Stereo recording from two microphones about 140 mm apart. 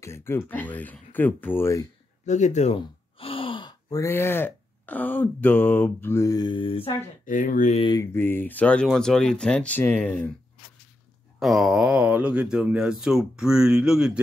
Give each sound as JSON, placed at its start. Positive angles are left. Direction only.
{"t": 0.0, "sound": "speech", "side_deg": 20}
{"t": 2.2, "sound": "gasp", "side_deg": 60}
{"t": 4.0, "sound": "speech", "side_deg": 15}
{"t": 7.2, "sound": "speech", "side_deg": 70}
{"t": 7.9, "sound": "speech", "side_deg": 20}
{"t": 11.3, "sound": "speech", "side_deg": 0}